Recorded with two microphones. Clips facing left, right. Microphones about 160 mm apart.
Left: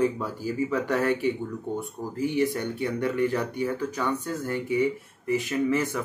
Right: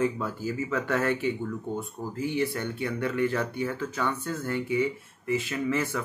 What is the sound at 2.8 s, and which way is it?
Speech, 15° left (ahead or behind).